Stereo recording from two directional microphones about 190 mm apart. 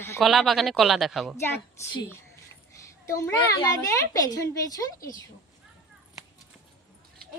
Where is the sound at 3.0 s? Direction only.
15° left (ahead or behind).